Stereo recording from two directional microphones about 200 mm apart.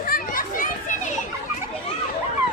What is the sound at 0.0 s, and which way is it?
Children playing, 45° left (ahead or behind).